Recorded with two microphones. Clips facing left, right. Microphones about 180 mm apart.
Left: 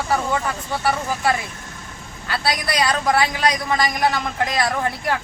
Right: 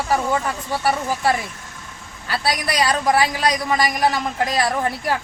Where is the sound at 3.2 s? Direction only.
35° right (ahead or behind).